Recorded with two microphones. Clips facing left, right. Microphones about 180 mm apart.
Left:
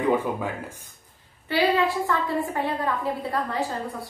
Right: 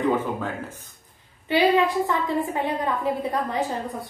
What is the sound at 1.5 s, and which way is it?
A woman's voice, 20° right (ahead or behind).